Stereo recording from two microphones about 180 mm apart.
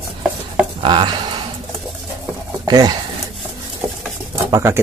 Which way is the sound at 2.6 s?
20° right (ahead or behind).